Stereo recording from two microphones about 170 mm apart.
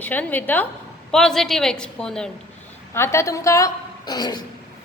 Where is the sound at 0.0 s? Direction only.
10° left (ahead or behind).